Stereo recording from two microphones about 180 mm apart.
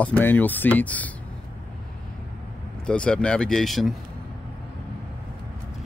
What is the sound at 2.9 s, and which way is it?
Speech, 5° left (ahead or behind).